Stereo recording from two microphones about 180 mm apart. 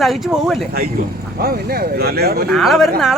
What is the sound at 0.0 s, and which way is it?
Speech, centre (ahead or behind).